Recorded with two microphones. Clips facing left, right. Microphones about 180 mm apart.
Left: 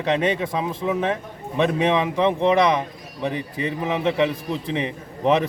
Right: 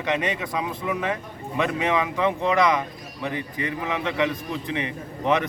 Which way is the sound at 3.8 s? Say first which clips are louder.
Left 5 dB; 30° left (ahead or behind).